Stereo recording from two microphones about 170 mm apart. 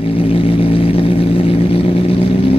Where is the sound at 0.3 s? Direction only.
35° left (ahead or behind).